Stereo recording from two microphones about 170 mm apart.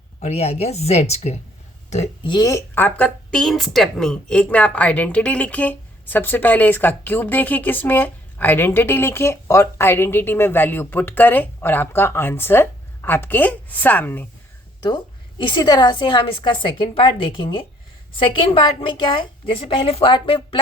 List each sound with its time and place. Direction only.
0.2 s a woman's voice: 40° left (ahead or behind)
2.2 s speech: 25° left (ahead or behind)
14.8 s a woman's voice: 25° left (ahead or behind)